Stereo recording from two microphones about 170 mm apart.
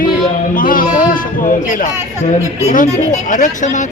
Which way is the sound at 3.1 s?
50° left (ahead or behind).